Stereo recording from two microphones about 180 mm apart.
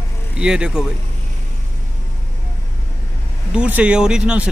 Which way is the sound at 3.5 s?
5° right (ahead or behind).